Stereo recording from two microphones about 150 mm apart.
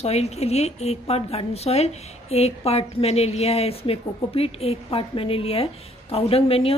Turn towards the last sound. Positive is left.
turn(degrees=40)  # may be behind; listen again after turning